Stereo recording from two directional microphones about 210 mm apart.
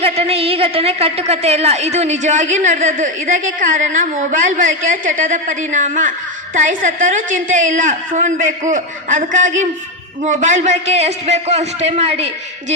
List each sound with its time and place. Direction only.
0.0 s a woman's voice: 30° right (ahead or behind)